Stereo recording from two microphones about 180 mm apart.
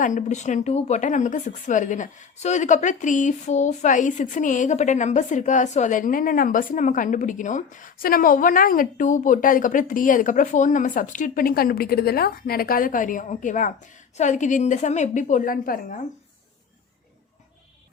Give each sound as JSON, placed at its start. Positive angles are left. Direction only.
{"t": 0.0, "sound": "a woman's voice", "side_deg": 45}